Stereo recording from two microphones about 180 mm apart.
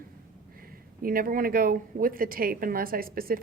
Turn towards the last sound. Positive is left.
turn(degrees=-55)  # may be behind; listen again after turning